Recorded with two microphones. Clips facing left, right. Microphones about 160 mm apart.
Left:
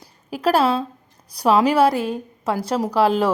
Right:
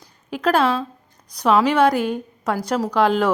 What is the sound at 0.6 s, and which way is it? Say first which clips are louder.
A woman's voice: left 1 dB; 30° left (ahead or behind).